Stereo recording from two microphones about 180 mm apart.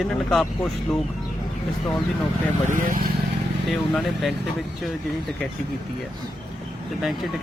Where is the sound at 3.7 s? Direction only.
Centre (ahead or behind).